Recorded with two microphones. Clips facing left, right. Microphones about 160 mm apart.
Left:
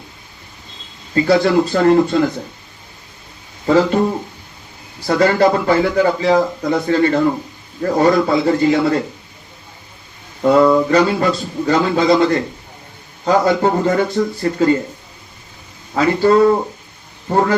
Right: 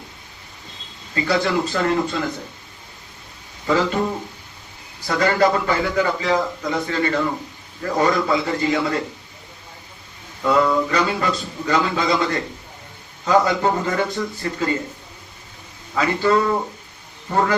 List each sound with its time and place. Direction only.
1.1 s speech: 40° left (ahead or behind)
3.7 s speech: 35° left (ahead or behind)
5.0 s speech: 35° left (ahead or behind)
10.4 s speech: 40° left (ahead or behind)
16.0 s speech: 35° left (ahead or behind)